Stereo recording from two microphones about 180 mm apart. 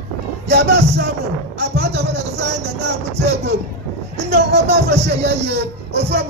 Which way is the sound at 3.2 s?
70° right (ahead or behind).